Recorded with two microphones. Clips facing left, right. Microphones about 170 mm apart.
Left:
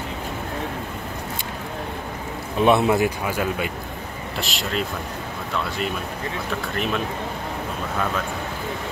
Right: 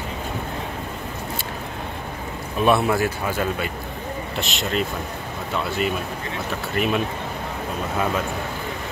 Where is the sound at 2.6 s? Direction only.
20° left (ahead or behind).